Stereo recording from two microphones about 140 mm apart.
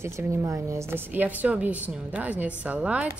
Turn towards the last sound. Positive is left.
turn(degrees=-10)  # may be behind; listen again after turning